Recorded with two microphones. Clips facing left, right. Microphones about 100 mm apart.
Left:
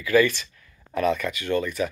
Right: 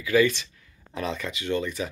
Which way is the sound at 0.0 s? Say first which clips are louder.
Left 2 dB; 20° right (ahead or behind).